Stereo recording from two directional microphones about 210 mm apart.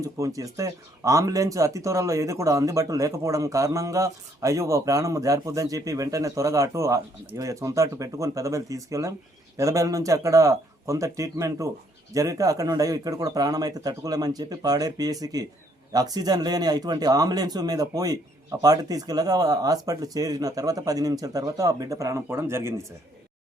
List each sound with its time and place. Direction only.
0.0 s speech: 15° right (ahead or behind)